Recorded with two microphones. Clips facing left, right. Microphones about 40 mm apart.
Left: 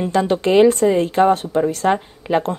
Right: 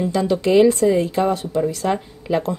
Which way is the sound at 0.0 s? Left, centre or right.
Left.